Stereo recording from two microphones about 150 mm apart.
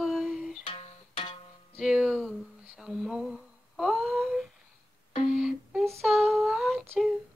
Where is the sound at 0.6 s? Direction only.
40° left (ahead or behind).